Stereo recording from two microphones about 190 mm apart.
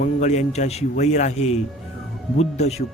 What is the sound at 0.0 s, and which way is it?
Speech, 40° left (ahead or behind).